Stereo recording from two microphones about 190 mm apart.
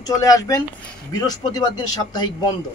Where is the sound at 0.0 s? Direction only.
20° left (ahead or behind).